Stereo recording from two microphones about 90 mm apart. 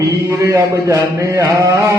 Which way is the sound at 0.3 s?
40° right (ahead or behind).